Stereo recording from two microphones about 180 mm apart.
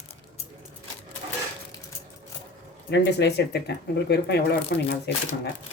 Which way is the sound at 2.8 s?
75° left (ahead or behind).